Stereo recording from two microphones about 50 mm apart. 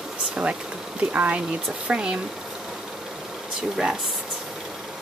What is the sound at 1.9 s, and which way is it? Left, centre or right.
Speech, centre.